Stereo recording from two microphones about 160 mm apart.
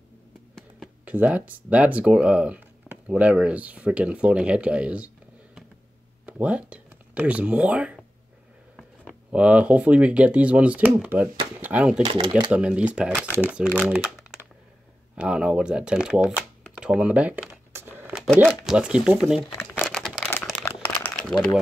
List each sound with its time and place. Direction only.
1.0 s speech: 10° right (ahead or behind)
9.3 s speech: 10° right (ahead or behind)
12.0 s speech: 30° right (ahead or behind)
12.4 s speech: 5° right (ahead or behind)
16.7 s computer keyboard: 5° right (ahead or behind)
18.2 s speech: centre (ahead or behind)
19.9 s a sound: centre (ahead or behind)
20.6 s crumpling: 10° left (ahead or behind)